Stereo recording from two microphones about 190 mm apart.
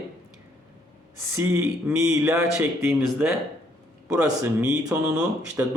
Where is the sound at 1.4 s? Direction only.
10° right (ahead or behind).